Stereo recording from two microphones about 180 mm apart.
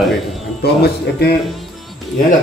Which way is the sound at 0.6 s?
65° left (ahead or behind).